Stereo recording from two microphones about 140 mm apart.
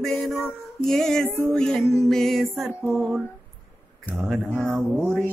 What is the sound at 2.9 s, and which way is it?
Music, centre (ahead or behind).